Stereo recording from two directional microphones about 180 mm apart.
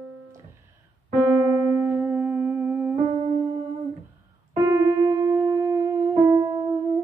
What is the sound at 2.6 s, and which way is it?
Music, 10° right (ahead or behind).